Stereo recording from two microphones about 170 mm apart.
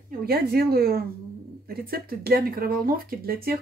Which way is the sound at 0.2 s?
65° right (ahead or behind).